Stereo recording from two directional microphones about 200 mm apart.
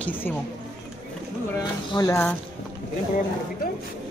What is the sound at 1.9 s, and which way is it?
Speech, 20° left (ahead or behind).